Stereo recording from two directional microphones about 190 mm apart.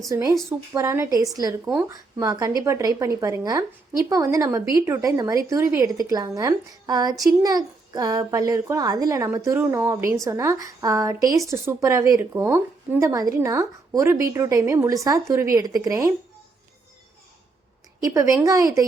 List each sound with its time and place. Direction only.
0.1 s a woman's voice: 15° right (ahead or behind)
18.0 s a woman's voice: 15° right (ahead or behind)